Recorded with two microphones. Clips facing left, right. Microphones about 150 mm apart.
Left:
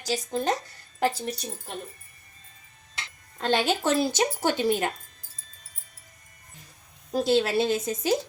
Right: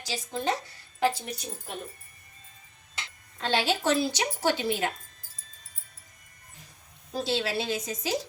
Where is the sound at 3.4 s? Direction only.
50° left (ahead or behind).